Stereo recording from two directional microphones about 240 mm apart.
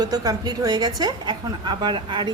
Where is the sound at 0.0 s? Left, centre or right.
Centre.